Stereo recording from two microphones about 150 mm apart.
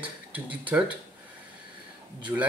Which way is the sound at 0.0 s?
10° right (ahead or behind).